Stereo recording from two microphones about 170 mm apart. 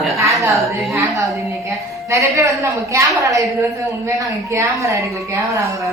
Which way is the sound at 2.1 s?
15° right (ahead or behind).